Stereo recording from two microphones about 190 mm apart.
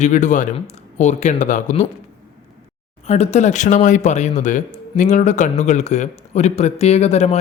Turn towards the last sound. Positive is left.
turn(degrees=35)  # may be behind; listen again after turning